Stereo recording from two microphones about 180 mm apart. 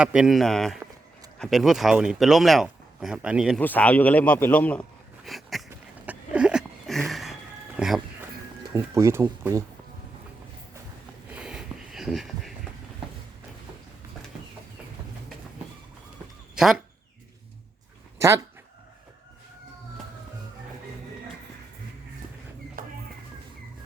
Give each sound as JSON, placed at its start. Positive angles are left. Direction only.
{"t": 0.0, "sound": "speech", "side_deg": -5}
{"t": 3.6, "sound": "speech", "side_deg": 10}
{"t": 6.1, "sound": "a sound", "side_deg": -5}
{"t": 7.8, "sound": "speech", "side_deg": 0}
{"t": 8.7, "sound": "speech", "side_deg": -15}
{"t": 11.3, "sound": "a sound", "side_deg": -5}
{"t": 16.6, "sound": "speech", "side_deg": 0}
{"t": 18.2, "sound": "speech", "side_deg": -15}
{"t": 22.8, "sound": "a sound", "side_deg": -55}